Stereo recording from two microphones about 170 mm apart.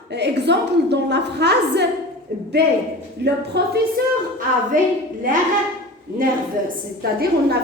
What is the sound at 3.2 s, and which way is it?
Speech, 75° right (ahead or behind).